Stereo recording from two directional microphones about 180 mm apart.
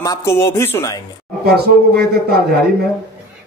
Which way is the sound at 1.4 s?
60° right (ahead or behind).